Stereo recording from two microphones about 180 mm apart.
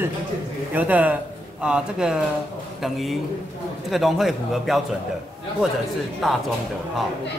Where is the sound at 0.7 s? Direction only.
10° right (ahead or behind).